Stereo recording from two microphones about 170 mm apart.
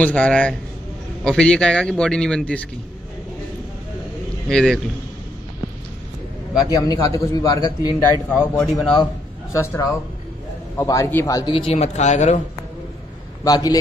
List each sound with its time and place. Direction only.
0.0 s a man's voice: 5° left (ahead or behind)
4.5 s a man's voice: 5° left (ahead or behind)
6.6 s a man's voice: 20° left (ahead or behind)
8.0 s a man's voice: 10° left (ahead or behind)
8.9 s a man's voice: 20° left (ahead or behind); by 12.4 s 45° left (ahead or behind)
13.4 s a man's voice: 20° left (ahead or behind)